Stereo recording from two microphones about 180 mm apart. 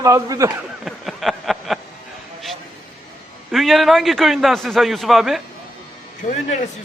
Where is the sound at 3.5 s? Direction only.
Centre (ahead or behind).